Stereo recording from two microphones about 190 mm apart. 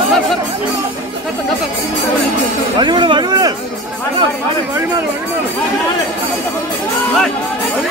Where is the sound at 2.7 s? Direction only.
25° right (ahead or behind).